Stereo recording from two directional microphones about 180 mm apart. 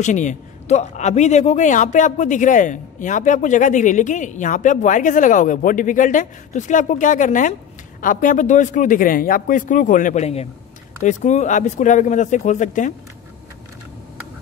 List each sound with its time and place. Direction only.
0.0 s a man's voice: 40° left (ahead or behind)